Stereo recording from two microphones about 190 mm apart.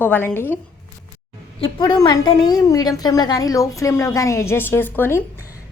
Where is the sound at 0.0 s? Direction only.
10° left (ahead or behind).